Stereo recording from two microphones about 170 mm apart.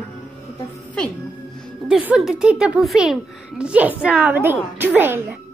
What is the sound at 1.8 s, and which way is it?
A woman's voice, 5° right (ahead or behind).